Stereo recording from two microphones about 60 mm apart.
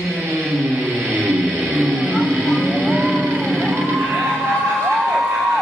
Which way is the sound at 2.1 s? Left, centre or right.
Centre.